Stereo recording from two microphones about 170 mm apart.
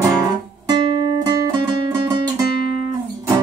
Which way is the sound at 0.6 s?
25° right (ahead or behind).